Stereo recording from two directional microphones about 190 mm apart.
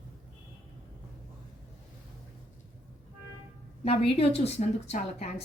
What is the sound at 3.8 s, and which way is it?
A woman's voice, 30° left (ahead or behind).